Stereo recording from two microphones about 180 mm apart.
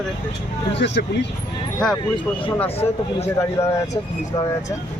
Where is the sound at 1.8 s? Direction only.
5° left (ahead or behind).